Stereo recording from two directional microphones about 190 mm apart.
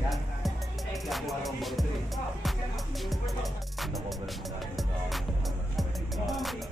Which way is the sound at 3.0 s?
Centre (ahead or behind).